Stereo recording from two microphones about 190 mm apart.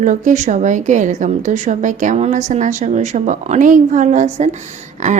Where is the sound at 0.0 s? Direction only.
40° right (ahead or behind).